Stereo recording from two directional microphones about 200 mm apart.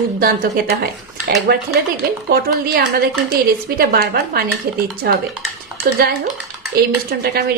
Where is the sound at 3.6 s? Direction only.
50° right (ahead or behind).